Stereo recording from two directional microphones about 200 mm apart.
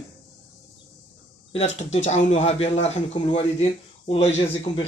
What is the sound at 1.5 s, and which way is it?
Speech, 30° left (ahead or behind).